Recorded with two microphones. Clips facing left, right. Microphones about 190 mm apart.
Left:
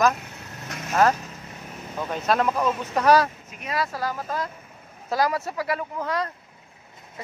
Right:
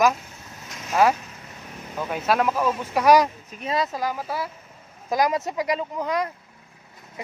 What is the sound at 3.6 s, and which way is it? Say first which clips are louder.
Speech: right 2 dB; 25° right (ahead or behind).